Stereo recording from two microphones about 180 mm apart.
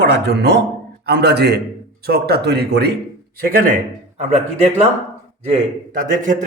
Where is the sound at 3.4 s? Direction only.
55° right (ahead or behind).